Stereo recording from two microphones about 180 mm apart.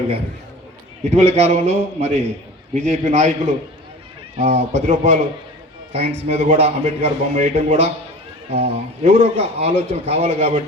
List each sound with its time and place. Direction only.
1.1 s a man's voice: 35° right (ahead or behind)
4.4 s a man's voice: 35° right (ahead or behind)